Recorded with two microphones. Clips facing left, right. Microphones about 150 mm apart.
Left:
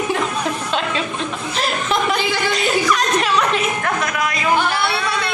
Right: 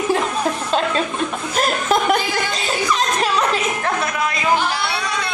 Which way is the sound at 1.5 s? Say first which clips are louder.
Right 3 dB; 45° right (ahead or behind).